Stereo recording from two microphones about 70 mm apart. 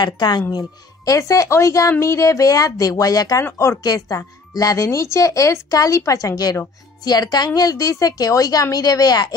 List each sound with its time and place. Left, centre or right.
0.0 s speech: left
1.1 s a woman's voice: left
3.4 s speech: left
3.8 s a woman's voice: left
4.6 s a woman's voice: left
7.1 s a woman's voice: left